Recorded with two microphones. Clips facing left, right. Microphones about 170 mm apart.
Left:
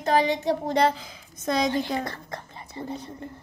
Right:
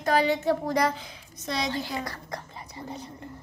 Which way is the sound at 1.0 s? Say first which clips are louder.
Even; 50° left (ahead or behind).